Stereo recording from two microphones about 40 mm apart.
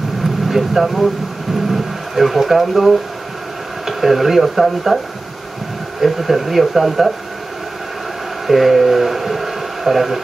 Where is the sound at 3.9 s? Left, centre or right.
Centre.